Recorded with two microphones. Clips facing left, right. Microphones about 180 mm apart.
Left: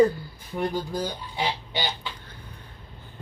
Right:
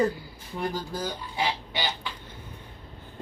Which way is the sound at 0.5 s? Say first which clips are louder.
Left 3 dB; 20° left (ahead or behind).